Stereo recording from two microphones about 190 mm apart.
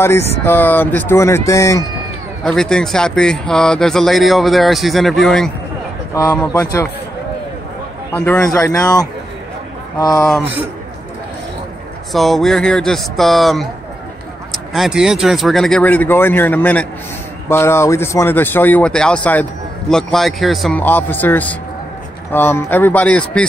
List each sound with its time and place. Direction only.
0.4 s speech: 10° left (ahead or behind)
2.4 s speech: 5° left (ahead or behind)
6.1 s speech: 10° left (ahead or behind)
8.1 s speech: 10° left (ahead or behind)
12.1 s speech: centre (ahead or behind)